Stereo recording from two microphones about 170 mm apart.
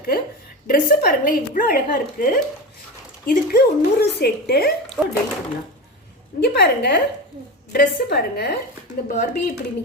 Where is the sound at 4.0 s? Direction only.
70° left (ahead or behind).